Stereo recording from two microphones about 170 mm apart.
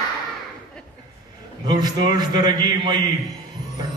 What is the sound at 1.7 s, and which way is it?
A man's voice, 25° right (ahead or behind).